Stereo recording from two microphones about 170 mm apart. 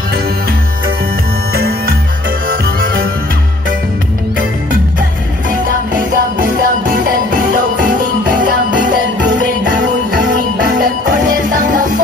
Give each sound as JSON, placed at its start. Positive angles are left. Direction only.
{"t": 1.5, "sound": "music", "side_deg": -65}
{"t": 5.5, "sound": "music", "side_deg": -55}
{"t": 11.5, "sound": "music", "side_deg": -50}